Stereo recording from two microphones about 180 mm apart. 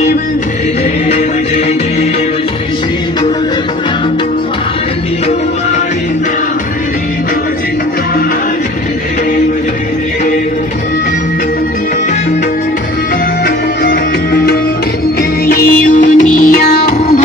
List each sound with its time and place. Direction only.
13.8 s music: 60° left (ahead or behind)